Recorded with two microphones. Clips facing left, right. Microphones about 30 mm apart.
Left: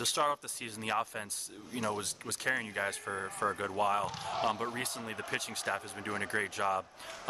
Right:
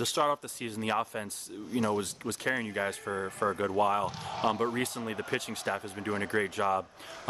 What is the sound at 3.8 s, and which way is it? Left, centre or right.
Speech, right.